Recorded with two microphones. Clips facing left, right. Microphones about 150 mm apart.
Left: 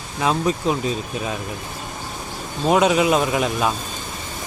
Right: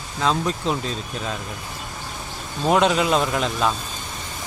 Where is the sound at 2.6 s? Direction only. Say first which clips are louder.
Left 2 dB; 5° left (ahead or behind).